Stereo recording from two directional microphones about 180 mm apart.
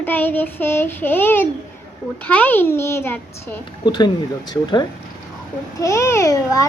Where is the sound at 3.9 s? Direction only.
25° left (ahead or behind).